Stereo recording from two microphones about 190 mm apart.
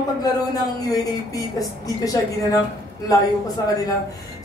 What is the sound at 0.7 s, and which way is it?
A woman's voice, 20° left (ahead or behind).